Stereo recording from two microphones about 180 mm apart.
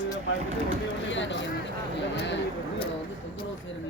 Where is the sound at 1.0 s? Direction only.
85° left.